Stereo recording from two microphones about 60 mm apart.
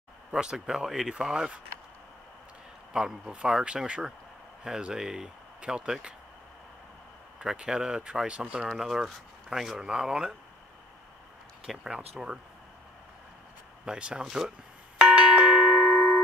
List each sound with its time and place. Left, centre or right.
0.3 s speech: centre
2.9 s speech: centre
7.4 s speech: centre
11.6 s speech: centre
13.8 s speech: centre
15.0 s doorbell: centre